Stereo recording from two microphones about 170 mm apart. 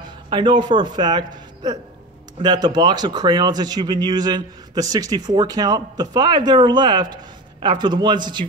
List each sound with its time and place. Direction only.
0.3 s a man's voice: 30° right (ahead or behind)